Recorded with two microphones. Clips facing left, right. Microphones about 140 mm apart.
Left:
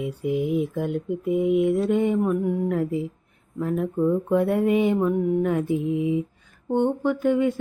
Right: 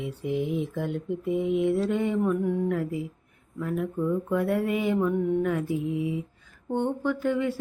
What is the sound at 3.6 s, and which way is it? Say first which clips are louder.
Mantra: left 5 dB; 30° left (ahead or behind).